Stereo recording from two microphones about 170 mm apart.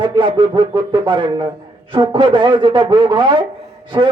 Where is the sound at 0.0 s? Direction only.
30° right (ahead or behind).